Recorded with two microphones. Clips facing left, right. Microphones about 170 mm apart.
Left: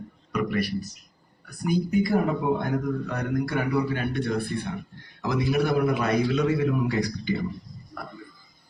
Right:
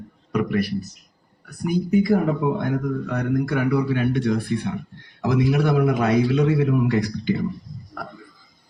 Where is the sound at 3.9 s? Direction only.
90° right.